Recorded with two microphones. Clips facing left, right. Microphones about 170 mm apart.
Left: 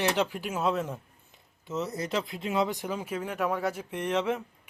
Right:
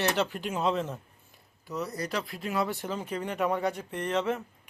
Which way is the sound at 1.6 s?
25° left (ahead or behind).